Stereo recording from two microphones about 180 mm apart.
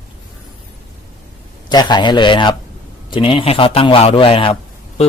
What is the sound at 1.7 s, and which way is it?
A man's voice, 25° left (ahead or behind).